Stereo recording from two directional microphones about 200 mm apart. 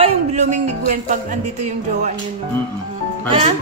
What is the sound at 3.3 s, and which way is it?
Speech, 30° right (ahead or behind).